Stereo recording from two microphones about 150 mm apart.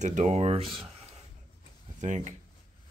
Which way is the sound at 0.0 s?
50° right (ahead or behind).